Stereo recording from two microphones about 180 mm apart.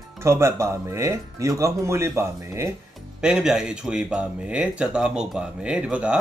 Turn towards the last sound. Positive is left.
turn(degrees=-5)  # may be behind; listen again after turning